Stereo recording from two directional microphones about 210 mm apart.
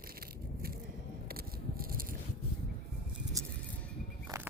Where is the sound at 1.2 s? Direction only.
45° right (ahead or behind).